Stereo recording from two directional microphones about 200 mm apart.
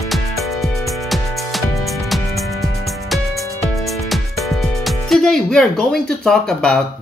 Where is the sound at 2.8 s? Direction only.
Centre (ahead or behind).